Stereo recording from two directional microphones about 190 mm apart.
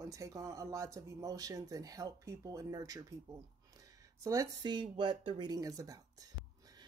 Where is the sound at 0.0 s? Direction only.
15° right (ahead or behind).